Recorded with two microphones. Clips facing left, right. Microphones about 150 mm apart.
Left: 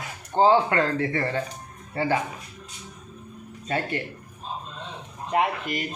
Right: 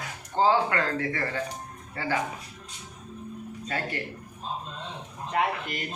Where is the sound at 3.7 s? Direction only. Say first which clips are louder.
Left 5 dB; 25° left (ahead or behind).